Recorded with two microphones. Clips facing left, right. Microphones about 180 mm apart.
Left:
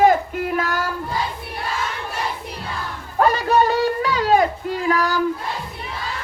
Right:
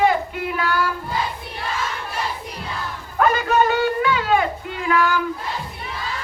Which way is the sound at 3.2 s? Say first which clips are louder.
Left 1 dB; 35° left (ahead or behind).